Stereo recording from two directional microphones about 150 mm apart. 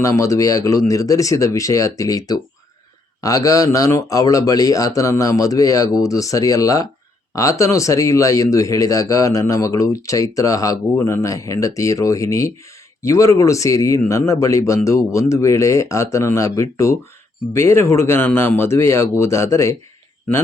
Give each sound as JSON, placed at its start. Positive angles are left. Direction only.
{"t": 0.0, "sound": "a man's voice", "side_deg": 20}